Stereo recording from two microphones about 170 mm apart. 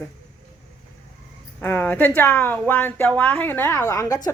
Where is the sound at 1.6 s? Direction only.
10° left (ahead or behind).